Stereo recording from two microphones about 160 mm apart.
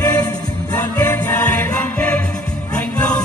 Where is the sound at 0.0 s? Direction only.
25° left (ahead or behind).